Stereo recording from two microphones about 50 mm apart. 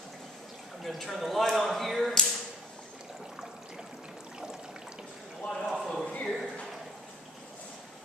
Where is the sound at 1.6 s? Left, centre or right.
Centre.